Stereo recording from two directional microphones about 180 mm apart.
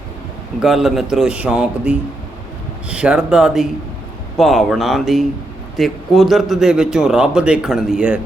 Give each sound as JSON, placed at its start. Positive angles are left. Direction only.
{"t": 0.6, "sound": "a man's voice", "side_deg": 0}